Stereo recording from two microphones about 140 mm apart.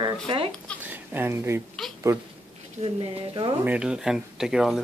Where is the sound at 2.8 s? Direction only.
40° right (ahead or behind).